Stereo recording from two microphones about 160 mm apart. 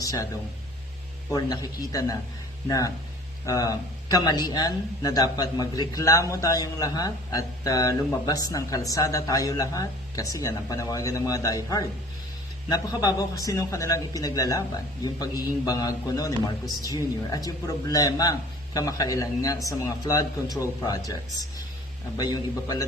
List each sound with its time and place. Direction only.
0.0 s speech: 20° left (ahead or behind)
1.3 s speech: 25° left (ahead or behind)
22.2 s speech: 25° left (ahead or behind)